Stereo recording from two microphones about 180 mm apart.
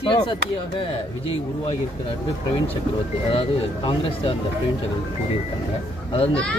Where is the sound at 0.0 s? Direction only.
25° left (ahead or behind).